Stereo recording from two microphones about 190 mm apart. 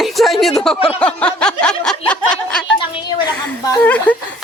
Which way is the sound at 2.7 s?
25° left (ahead or behind).